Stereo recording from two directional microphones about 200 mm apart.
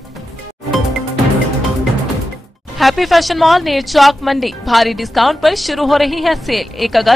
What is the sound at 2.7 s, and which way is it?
A woman's voice, centre (ahead or behind).